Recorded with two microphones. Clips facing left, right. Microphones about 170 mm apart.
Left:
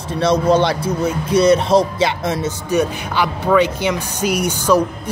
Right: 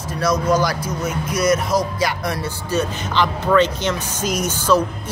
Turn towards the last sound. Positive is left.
turn(degrees=15)  # may be behind; listen again after turning